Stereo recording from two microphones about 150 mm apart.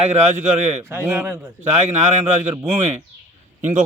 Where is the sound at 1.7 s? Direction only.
50° right (ahead or behind).